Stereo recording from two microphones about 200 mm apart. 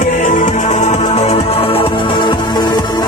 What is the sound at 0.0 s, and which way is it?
Music, 40° left (ahead or behind).